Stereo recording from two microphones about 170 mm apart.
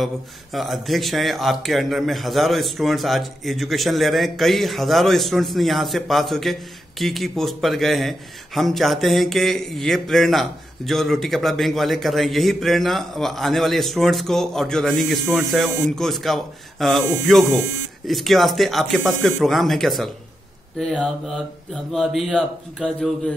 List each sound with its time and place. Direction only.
0.0 s speech: centre (ahead or behind)